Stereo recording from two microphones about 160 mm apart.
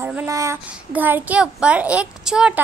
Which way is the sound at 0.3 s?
20° right (ahead or behind).